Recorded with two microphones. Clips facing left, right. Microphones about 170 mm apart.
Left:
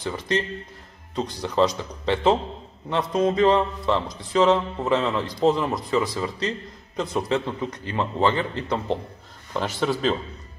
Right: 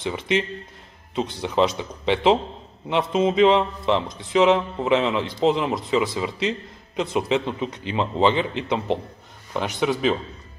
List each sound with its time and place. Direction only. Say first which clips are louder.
0.0 s a man's voice: right 2 dB; 20° right (ahead or behind)